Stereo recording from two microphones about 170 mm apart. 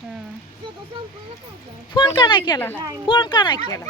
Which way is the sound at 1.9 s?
25° left (ahead or behind).